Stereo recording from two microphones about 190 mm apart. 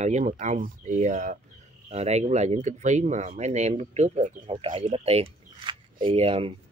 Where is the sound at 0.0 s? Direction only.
35° right (ahead or behind).